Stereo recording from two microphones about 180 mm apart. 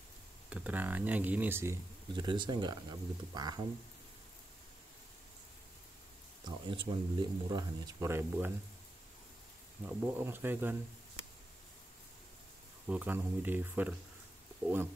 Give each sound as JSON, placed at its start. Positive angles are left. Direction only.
{"t": 0.5, "sound": "speech", "side_deg": -10}
{"t": 2.1, "sound": "speech", "side_deg": -25}
{"t": 6.4, "sound": "speech", "side_deg": -25}
{"t": 9.8, "sound": "speech", "side_deg": -10}
{"t": 12.8, "sound": "speech", "side_deg": -10}